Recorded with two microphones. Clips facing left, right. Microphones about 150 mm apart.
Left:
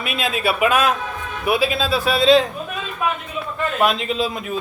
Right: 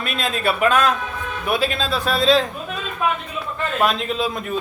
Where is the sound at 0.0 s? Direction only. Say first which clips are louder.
Left 1 dB; 5° left (ahead or behind).